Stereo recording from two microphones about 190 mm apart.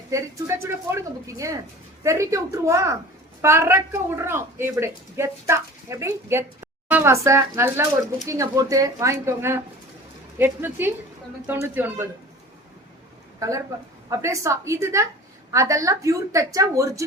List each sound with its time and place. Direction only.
0.1 s a woman's voice: 15° right (ahead or behind)
13.4 s a woman's voice: 15° right (ahead or behind)